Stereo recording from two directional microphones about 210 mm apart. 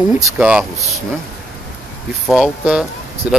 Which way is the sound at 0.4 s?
5° right (ahead or behind).